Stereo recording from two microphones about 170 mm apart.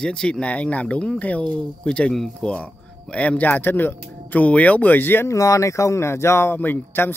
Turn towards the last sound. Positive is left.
turn(degrees=15)  # may be behind; listen again after turning